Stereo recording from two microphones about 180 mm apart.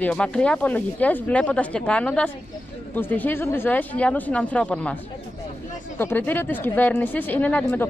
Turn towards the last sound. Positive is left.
turn(degrees=5)  # may be behind; listen again after turning